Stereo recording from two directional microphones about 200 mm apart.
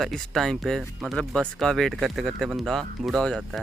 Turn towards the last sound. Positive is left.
turn(degrees=0)  # may be behind; listen again after turning